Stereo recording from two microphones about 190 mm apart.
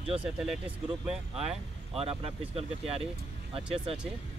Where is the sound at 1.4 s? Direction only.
30° right (ahead or behind).